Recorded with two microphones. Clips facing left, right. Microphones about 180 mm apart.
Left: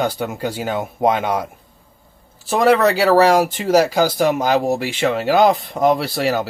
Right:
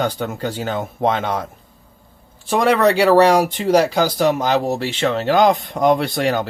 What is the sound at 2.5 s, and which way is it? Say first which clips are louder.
Speech: left 1 dB; centre (ahead or behind).